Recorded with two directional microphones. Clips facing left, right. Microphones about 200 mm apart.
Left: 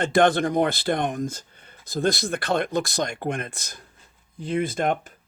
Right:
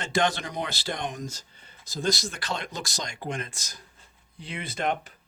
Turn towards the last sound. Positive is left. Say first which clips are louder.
# left 5 dB
turn(degrees=50)  # may be behind; listen again after turning